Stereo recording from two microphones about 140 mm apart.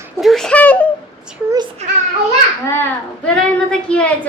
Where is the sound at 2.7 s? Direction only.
15° left (ahead or behind).